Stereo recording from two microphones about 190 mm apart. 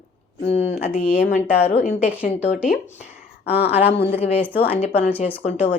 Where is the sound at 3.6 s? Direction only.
30° left (ahead or behind).